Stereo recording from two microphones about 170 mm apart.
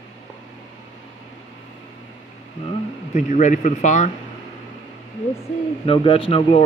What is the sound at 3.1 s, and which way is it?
Speech, 45° left (ahead or behind).